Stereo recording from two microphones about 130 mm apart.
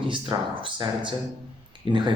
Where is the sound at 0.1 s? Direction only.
40° right (ahead or behind).